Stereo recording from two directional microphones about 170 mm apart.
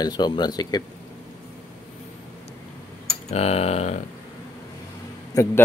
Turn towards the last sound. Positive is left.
turn(degrees=20)  # may be behind; listen again after turning